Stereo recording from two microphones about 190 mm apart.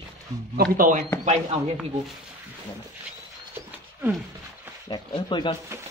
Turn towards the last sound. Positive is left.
turn(degrees=25)  # may be behind; listen again after turning